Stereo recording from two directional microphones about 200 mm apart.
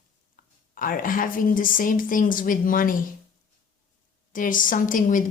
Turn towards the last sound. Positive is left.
turn(degrees=40)  # may be behind; listen again after turning